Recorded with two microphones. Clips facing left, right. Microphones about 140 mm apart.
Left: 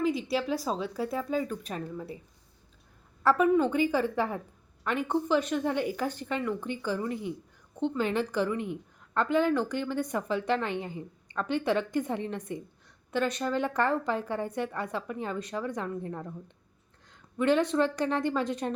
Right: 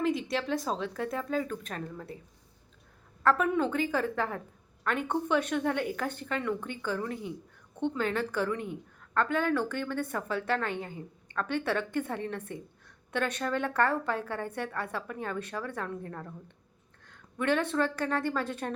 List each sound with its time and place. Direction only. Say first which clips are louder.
0.0 s a woman's voice: left 1 dB; centre (ahead or behind)
3.2 s a woman's voice: left 3 dB; centre (ahead or behind)
17.3 s a woman's voice: left 3 dB; 10° left (ahead or behind)